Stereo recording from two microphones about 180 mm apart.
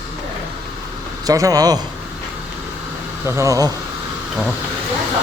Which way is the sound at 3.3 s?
15° right (ahead or behind).